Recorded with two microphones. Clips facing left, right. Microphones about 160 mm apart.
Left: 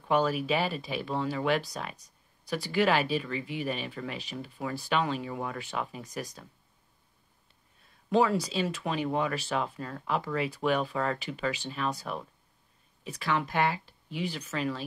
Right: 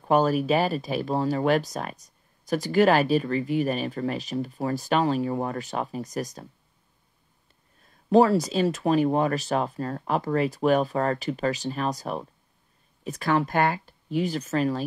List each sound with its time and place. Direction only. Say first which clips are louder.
0.0 s speech: right 5 dB; 45° right (ahead or behind)
8.1 s speech: right 7 dB; 40° right (ahead or behind)